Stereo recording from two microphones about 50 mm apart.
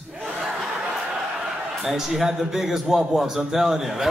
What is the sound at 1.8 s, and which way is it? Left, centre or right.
A man's voice, centre.